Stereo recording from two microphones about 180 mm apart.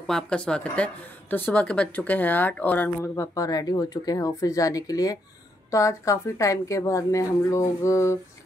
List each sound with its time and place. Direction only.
0.0 s speech: 5° left (ahead or behind)